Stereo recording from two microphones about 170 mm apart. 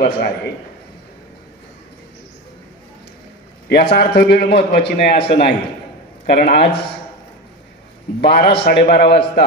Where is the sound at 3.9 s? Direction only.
75° left (ahead or behind).